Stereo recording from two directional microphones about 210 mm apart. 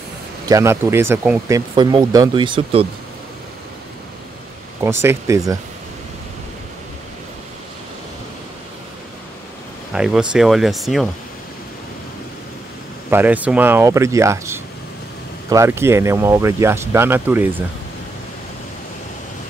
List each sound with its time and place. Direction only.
0.5 s speech: 15° right (ahead or behind)
1.8 s speech: 20° right (ahead or behind)
4.8 s speech: 15° right (ahead or behind)
9.9 s speech: 5° right (ahead or behind)
13.1 s speech: 5° right (ahead or behind)